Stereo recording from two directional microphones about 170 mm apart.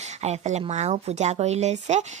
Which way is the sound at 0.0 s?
40° right (ahead or behind).